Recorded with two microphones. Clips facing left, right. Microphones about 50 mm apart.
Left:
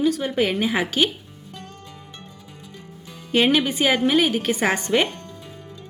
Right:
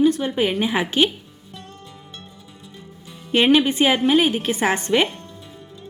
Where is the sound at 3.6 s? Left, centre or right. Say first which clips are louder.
Right 3 dB; right.